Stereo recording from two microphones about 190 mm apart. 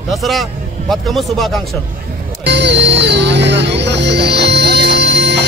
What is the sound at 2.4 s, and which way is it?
Music, 65° right (ahead or behind).